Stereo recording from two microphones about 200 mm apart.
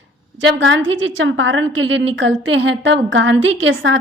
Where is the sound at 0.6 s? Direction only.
70° right (ahead or behind).